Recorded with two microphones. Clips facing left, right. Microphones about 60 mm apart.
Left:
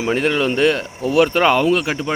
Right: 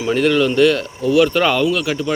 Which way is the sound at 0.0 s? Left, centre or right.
Left.